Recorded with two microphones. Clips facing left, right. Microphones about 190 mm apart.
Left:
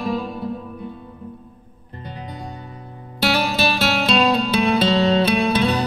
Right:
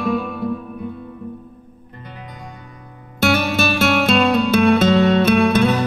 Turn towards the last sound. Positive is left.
turn(degrees=-50)  # may be behind; listen again after turning